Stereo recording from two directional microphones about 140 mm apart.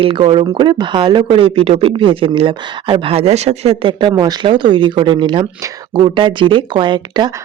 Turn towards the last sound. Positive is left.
turn(degrees=-35)  # may be behind; listen again after turning